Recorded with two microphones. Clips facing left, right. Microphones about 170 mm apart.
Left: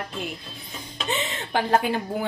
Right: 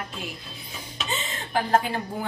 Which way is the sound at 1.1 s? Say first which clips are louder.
Left 2 dB; 65° left (ahead or behind).